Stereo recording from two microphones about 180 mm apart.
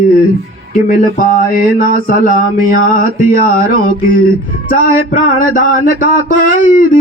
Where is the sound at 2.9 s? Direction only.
50° left (ahead or behind).